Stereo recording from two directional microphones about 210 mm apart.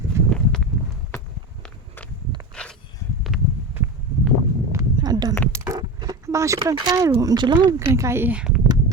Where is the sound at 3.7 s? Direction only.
10° right (ahead or behind).